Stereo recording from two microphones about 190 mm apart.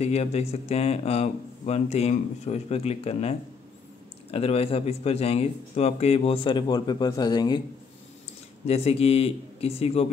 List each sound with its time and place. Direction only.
0.0 s speech: 35° left (ahead or behind)
8.6 s speech: 35° left (ahead or behind)